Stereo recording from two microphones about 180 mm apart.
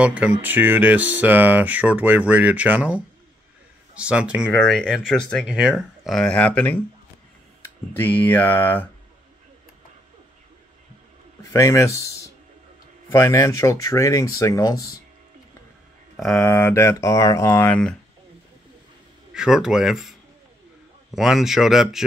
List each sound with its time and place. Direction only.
0.0 s speech: 5° right (ahead or behind); by 6.8 s 10° left (ahead or behind)
7.9 s speech: 10° left (ahead or behind)
11.5 s speech: 15° left (ahead or behind)
16.4 s speech: 15° left (ahead or behind)
19.3 s speech: 5° right (ahead or behind)